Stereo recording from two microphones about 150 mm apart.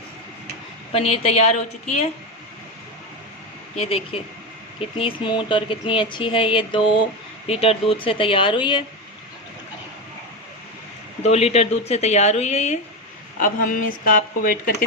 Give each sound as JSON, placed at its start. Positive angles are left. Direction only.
{"t": 0.9, "sound": "a woman's voice", "side_deg": 40}
{"t": 3.8, "sound": "speech", "side_deg": 40}
{"t": 11.2, "sound": "a woman's voice", "side_deg": 45}
{"t": 13.4, "sound": "speech", "side_deg": 60}